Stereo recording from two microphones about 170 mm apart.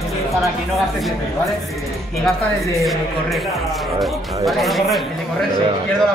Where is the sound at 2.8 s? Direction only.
Centre (ahead or behind).